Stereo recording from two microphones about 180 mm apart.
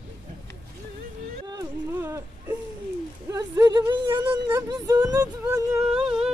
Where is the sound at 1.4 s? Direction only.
20° right (ahead or behind).